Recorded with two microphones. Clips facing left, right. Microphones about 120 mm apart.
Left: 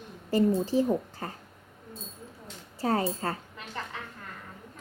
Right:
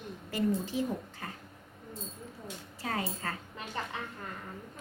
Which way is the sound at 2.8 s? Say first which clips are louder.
Left 8 dB; 35° left (ahead or behind).